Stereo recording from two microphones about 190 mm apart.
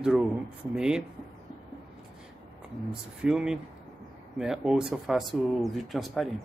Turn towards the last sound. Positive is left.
turn(degrees=0)  # may be behind; listen again after turning